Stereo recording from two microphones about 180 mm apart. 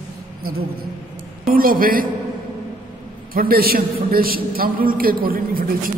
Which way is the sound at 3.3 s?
55° right (ahead or behind).